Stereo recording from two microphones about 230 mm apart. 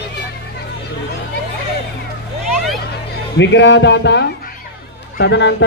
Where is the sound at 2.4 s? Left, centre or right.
Centre.